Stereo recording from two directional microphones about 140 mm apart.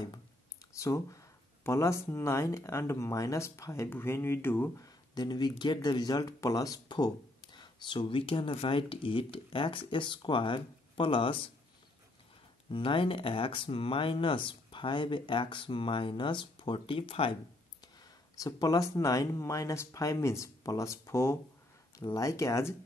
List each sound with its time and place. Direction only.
0.7 s speech: 25° left (ahead or behind)
4.8 s speech: 30° left (ahead or behind)
12.7 s speech: 40° left (ahead or behind)
18.3 s speech: 25° left (ahead or behind)